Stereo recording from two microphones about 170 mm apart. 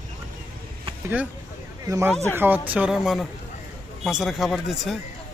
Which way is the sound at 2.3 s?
10° right (ahead or behind).